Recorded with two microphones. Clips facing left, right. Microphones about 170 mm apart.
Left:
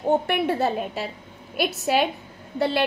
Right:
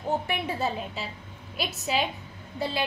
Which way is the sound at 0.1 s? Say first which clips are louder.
Left 7 dB; 60° left (ahead or behind).